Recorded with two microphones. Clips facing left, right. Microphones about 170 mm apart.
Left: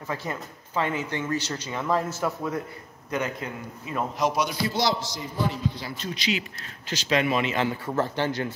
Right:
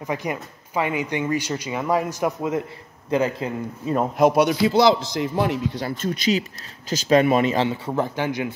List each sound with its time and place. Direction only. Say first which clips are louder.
0.0 s speech: right 5 dB; 15° right (ahead or behind)
3.1 s a man's voice: right 7 dB; 30° right (ahead or behind)
4.2 s a man's voice: right 9 dB; 60° right (ahead or behind)
5.8 s speech: right 8 dB; 45° right (ahead or behind)
7.5 s speech: right 4 dB; 25° right (ahead or behind)
7.9 s speech: right 2 dB; 15° right (ahead or behind)